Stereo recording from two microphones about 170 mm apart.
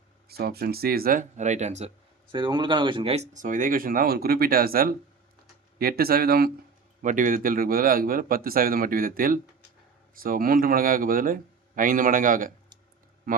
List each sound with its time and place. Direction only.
0.3 s speech: 65° right (ahead or behind); by 1.9 s 40° right (ahead or behind)
2.3 s speech: 25° right (ahead or behind); by 6.5 s 65° right (ahead or behind)
7.0 s speech: 50° right (ahead or behind)
13.3 s a sound: 55° right (ahead or behind)